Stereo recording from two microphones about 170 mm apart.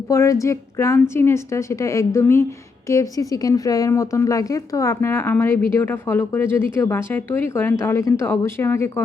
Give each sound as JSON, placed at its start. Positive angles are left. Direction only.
{"t": 0.1, "sound": "a woman's voice", "side_deg": 20}